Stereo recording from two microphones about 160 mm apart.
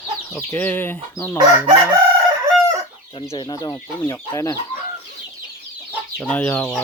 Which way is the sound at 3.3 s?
30° left (ahead or behind).